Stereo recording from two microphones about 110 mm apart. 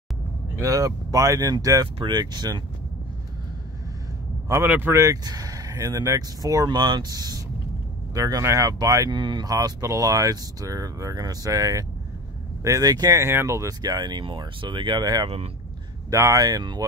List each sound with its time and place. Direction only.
0.6 s speech: 30° right (ahead or behind)
4.5 s speech: 20° right (ahead or behind)
4.9 s speech: 30° right (ahead or behind)
9.1 s speech: 45° right (ahead or behind)